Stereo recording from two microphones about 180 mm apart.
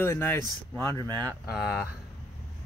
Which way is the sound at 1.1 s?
20° right (ahead or behind).